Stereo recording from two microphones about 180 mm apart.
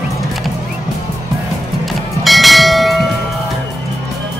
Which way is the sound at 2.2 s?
Centre (ahead or behind).